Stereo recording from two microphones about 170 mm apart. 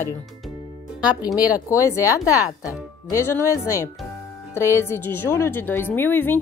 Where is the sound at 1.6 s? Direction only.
15° left (ahead or behind).